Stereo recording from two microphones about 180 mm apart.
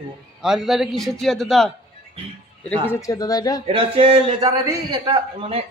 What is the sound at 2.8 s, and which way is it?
Speech, 15° left (ahead or behind).